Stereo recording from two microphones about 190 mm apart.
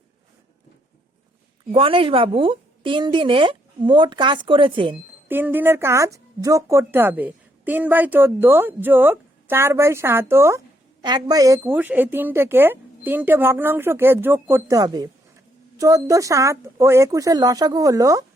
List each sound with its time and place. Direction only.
1.7 s a woman's voice: 30° right (ahead or behind)
5.3 s speech: 10° right (ahead or behind)